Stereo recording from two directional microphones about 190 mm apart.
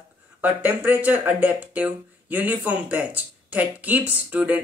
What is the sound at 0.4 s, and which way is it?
Speech, 10° right (ahead or behind).